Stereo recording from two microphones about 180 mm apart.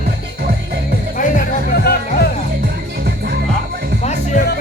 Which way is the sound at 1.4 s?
60° left (ahead or behind).